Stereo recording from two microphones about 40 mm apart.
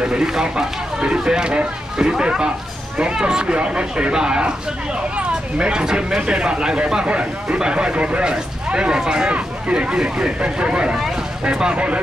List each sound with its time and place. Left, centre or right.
0.0 s speech: centre
9.3 s speech: right